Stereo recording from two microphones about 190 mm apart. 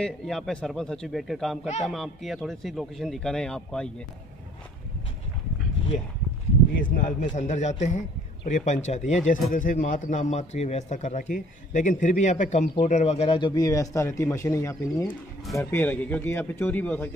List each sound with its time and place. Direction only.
0.0 s speech: centre (ahead or behind)
6.8 s a man's voice: 45° left (ahead or behind); by 17.1 s 10° left (ahead or behind)